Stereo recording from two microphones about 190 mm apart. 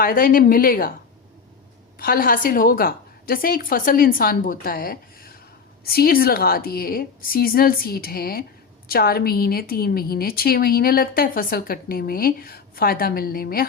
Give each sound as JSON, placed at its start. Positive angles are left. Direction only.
{"t": 0.0, "sound": "a woman's voice", "side_deg": 50}
{"t": 2.0, "sound": "a woman's voice", "side_deg": 50}